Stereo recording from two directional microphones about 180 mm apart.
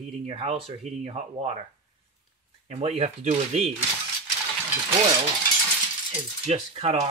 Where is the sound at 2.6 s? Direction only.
35° right (ahead or behind).